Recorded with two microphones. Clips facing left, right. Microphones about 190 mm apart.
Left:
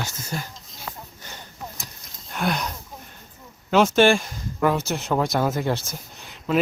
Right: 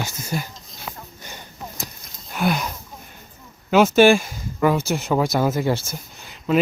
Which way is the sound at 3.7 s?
5° right (ahead or behind).